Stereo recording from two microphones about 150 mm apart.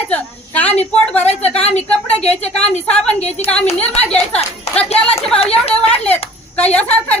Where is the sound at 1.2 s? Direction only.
45° left (ahead or behind).